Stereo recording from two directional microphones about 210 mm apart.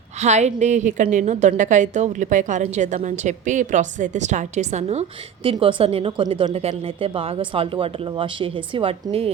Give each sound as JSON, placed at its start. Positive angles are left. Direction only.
{"t": 0.2, "sound": "a woman's voice", "side_deg": -35}